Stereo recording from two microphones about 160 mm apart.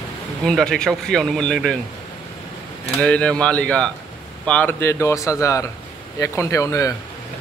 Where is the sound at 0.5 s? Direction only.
5° left (ahead or behind).